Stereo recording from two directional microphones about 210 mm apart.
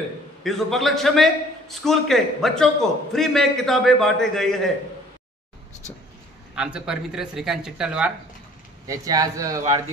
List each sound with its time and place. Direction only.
0.4 s a man's voice: centre (ahead or behind)
6.5 s a man's voice: 5° right (ahead or behind)
8.8 s speech: 15° right (ahead or behind)